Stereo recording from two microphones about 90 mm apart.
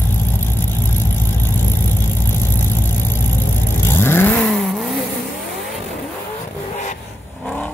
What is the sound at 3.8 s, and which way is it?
Vehicle, 25° left (ahead or behind).